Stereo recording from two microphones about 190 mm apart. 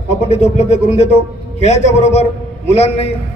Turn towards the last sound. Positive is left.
turn(degrees=35)  # may be behind; listen again after turning